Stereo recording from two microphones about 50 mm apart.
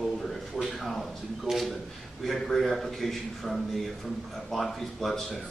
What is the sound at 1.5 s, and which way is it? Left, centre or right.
Speech, centre.